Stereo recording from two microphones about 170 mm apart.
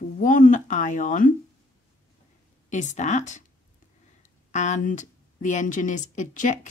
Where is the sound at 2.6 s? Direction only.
45° left (ahead or behind).